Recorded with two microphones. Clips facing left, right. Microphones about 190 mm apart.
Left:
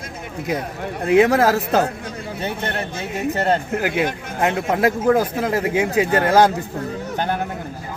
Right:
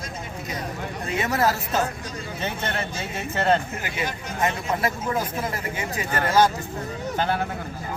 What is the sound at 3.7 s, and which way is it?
Speech, 65° left (ahead or behind).